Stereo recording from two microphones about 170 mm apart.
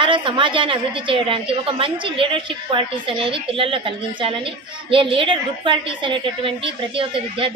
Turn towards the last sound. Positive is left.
turn(degrees=-30)  # may be behind; listen again after turning